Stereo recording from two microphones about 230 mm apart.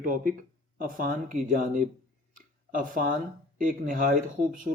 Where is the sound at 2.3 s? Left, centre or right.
Right.